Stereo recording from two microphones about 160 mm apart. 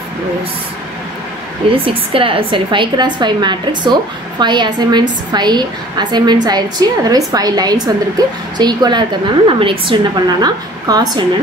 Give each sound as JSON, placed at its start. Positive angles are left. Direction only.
{"t": 1.6, "sound": "a woman's voice", "side_deg": -35}